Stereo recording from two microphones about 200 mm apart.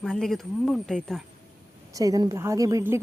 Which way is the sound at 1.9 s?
15° right (ahead or behind).